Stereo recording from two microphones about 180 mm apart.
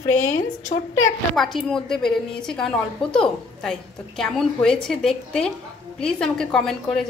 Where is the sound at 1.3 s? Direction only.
Centre (ahead or behind).